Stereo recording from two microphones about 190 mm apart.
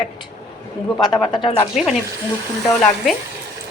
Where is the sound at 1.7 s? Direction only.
Centre (ahead or behind).